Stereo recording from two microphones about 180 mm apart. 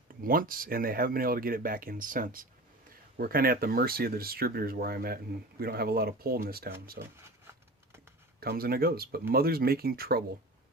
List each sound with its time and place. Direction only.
0.1 s speech: 50° right (ahead or behind)
7.0 s speech: 15° right (ahead or behind)
8.4 s speech: 55° right (ahead or behind)